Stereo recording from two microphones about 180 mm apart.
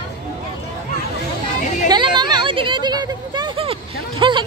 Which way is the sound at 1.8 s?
25° right (ahead or behind).